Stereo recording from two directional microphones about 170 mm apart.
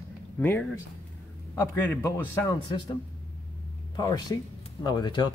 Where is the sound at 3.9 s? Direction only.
20° left (ahead or behind).